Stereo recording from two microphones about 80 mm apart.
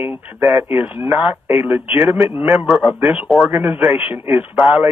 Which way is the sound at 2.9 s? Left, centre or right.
Right.